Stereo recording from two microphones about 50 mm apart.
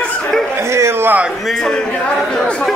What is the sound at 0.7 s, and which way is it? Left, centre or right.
Speech, right.